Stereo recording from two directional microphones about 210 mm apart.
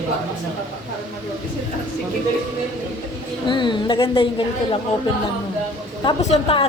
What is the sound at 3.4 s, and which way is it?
A woman's voice, 20° left (ahead or behind).